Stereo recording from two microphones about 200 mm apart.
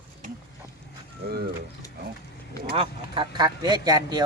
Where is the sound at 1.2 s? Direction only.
50° right (ahead or behind).